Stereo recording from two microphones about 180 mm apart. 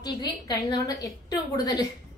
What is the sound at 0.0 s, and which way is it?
A woman's voice, 20° left (ahead or behind).